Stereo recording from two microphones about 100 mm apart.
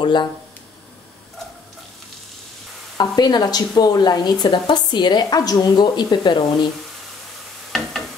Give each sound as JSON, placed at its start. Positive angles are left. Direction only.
{"t": 0.0, "sound": "speech", "side_deg": 50}
{"t": 3.0, "sound": "speech", "side_deg": 45}